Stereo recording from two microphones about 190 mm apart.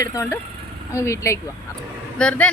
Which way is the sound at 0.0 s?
15° left (ahead or behind).